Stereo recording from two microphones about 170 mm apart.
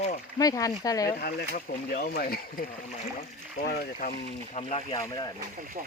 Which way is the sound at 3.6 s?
60° left (ahead or behind).